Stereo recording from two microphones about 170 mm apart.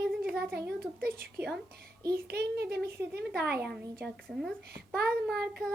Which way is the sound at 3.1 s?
70° right (ahead or behind).